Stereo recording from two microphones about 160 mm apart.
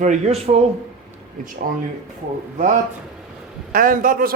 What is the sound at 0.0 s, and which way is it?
Speech, 45° right (ahead or behind).